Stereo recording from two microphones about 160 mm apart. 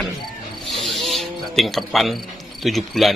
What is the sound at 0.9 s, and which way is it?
Speech, centre (ahead or behind).